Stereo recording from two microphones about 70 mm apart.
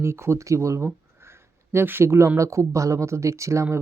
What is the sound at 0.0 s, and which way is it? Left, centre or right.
Speech, right.